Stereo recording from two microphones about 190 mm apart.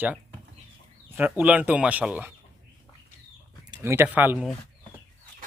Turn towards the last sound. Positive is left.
turn(degrees=-5)  # may be behind; listen again after turning